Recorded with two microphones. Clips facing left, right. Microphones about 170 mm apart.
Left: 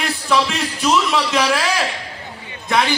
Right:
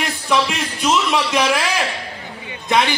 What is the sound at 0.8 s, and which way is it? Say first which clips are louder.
Speech: even; 15° right (ahead or behind).